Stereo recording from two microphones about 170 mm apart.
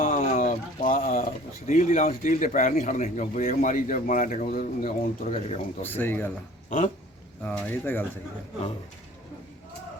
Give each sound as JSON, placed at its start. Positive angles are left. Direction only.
{"t": 0.2, "sound": "speech", "side_deg": 50}
{"t": 5.8, "sound": "speech", "side_deg": 10}
{"t": 6.7, "sound": "dog", "side_deg": 50}
{"t": 7.4, "sound": "speech", "side_deg": 10}